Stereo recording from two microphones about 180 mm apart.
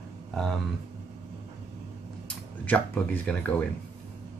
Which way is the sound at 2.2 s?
10° left (ahead or behind).